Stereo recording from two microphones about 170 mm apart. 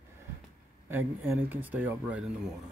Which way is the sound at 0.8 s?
15° right (ahead or behind).